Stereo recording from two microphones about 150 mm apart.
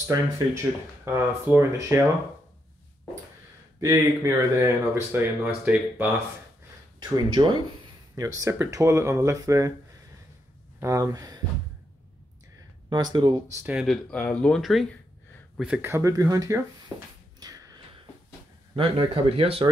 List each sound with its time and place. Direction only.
0.1 s speech: 20° right (ahead or behind)
3.8 s speech: 20° right (ahead or behind)
5.1 s speech: 10° right (ahead or behind)
7.0 s speech: 30° right (ahead or behind)
10.8 s speech: 20° right (ahead or behind)
12.9 s speech: 30° right (ahead or behind)
13.7 s speech: 5° right (ahead or behind)
14.1 s speech: 10° left (ahead or behind); by 17.1 s 20° right (ahead or behind)
17.4 s a sound: 25° right (ahead or behind)
18.8 s speech: 40° right (ahead or behind)